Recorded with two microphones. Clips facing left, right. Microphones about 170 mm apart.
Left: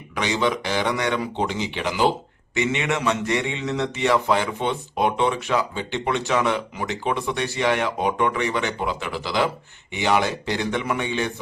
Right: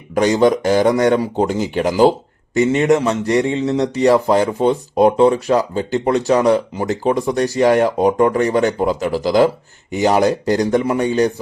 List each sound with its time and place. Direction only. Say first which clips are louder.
0.1 s speech: right 10 dB; 45° right (ahead or behind)